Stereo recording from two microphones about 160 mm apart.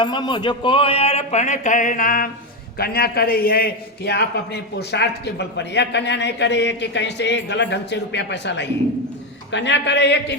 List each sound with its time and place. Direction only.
0.0 s a man's voice: 30° left (ahead or behind); by 2.3 s 60° left (ahead or behind)
2.7 s a man's voice: 75° left (ahead or behind)